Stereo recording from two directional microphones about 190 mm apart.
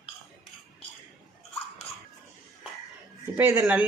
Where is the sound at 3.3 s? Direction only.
15° right (ahead or behind).